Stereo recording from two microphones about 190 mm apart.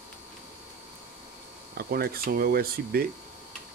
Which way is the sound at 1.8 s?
55° right (ahead or behind).